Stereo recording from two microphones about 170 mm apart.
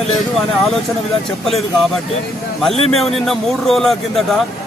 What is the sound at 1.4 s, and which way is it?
A man's voice, centre (ahead or behind).